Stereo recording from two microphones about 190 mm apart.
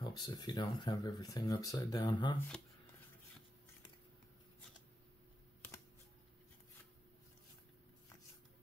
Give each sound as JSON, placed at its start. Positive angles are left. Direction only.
{"t": 0.0, "sound": "speech", "side_deg": 20}